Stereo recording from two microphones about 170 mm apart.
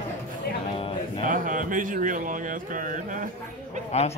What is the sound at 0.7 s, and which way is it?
Music, 35° left (ahead or behind).